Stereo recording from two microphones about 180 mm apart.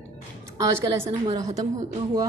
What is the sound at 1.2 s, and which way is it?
Speech, 25° right (ahead or behind).